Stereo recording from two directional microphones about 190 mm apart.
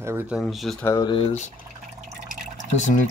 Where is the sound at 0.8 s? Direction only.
20° left (ahead or behind).